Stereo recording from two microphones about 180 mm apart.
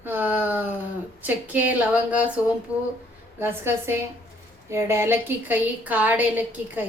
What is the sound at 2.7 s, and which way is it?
Speech, 15° left (ahead or behind).